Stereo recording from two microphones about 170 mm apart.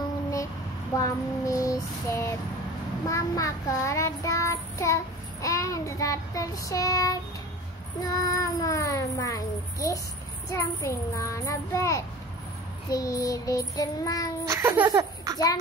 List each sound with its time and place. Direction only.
0.9 s child singing: 20° left (ahead or behind)
10.5 s a child's voice: 15° left (ahead or behind)
12.9 s child singing: 20° left (ahead or behind)
14.5 s laughter: 15° right (ahead or behind)
15.3 s child singing: 20° left (ahead or behind)